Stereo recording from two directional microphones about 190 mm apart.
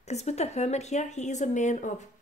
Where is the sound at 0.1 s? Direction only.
35° left (ahead or behind).